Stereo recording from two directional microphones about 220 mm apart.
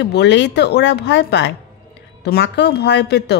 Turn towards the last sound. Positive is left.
turn(degrees=50)  # may be behind; listen again after turning